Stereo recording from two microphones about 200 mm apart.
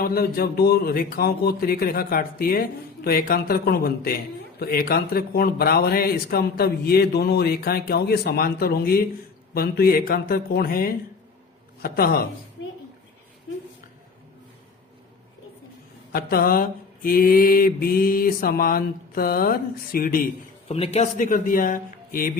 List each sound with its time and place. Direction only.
0.0 s speech: 50° left (ahead or behind)
16.1 s speech: 45° left (ahead or behind)
20.7 s speech: 30° left (ahead or behind)